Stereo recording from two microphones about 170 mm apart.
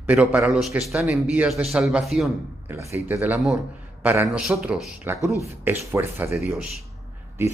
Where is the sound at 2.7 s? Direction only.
15° right (ahead or behind).